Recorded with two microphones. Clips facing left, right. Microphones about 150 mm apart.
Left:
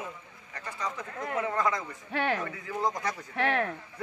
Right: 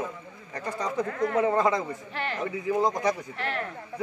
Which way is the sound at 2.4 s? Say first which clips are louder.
Right 7 dB; 20° right (ahead or behind).